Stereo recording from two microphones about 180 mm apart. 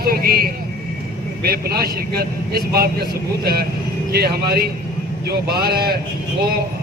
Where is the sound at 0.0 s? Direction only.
55° right (ahead or behind).